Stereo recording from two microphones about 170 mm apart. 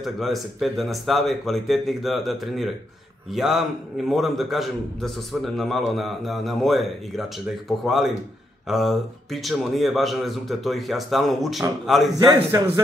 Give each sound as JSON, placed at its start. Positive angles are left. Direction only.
{"t": 0.0, "sound": "a man's voice", "side_deg": 0}
{"t": 12.4, "sound": "speech", "side_deg": -20}